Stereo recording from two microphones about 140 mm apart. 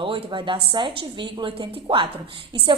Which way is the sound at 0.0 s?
35° right (ahead or behind).